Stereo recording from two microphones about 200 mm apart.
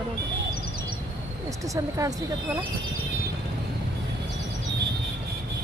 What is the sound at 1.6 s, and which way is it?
Speech, 15° right (ahead or behind).